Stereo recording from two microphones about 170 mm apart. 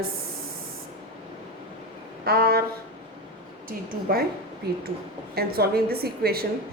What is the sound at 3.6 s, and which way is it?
Speech, 65° right (ahead or behind).